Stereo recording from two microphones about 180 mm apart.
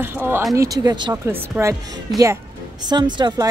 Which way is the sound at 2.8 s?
25° right (ahead or behind).